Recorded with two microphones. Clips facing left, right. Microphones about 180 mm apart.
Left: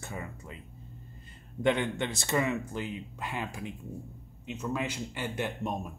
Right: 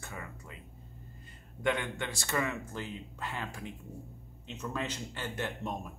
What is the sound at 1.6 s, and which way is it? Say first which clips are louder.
A man's voice: left 5 dB; 25° left (ahead or behind).